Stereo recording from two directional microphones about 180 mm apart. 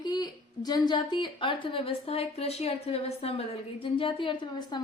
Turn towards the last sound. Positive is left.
turn(degrees=25)  # may be behind; listen again after turning